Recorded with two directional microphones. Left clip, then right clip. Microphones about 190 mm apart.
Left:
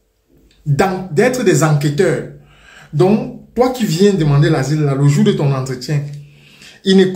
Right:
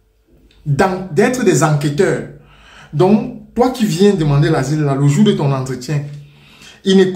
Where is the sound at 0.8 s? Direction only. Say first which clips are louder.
Even; 5° right (ahead or behind).